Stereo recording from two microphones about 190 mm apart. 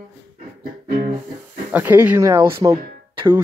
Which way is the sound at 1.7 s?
10° right (ahead or behind).